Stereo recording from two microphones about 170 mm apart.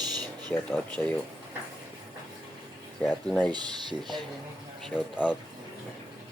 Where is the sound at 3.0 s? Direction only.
5° left (ahead or behind).